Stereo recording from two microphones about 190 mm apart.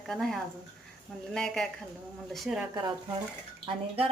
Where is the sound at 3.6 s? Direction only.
30° right (ahead or behind).